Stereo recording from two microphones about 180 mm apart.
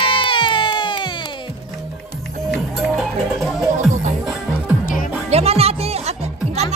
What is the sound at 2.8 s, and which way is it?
Music, centre (ahead or behind).